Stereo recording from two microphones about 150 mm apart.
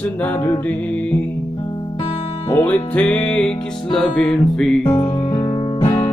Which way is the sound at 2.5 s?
15° left (ahead or behind).